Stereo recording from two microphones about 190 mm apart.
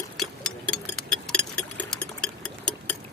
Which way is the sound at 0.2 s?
5° left (ahead or behind).